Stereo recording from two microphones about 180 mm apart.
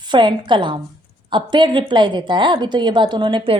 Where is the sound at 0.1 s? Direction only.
25° right (ahead or behind).